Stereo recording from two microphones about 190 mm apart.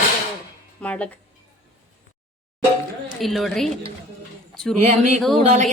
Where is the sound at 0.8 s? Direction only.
5° left (ahead or behind).